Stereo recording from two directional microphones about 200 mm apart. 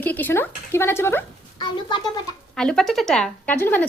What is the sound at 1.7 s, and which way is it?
Speech, 25° left (ahead or behind).